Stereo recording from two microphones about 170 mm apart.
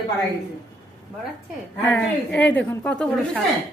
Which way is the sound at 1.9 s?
5° left (ahead or behind).